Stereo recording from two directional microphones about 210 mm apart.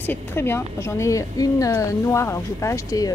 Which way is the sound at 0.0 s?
10° left (ahead or behind).